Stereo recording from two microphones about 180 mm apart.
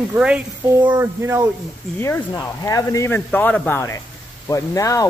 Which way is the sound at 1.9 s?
15° left (ahead or behind).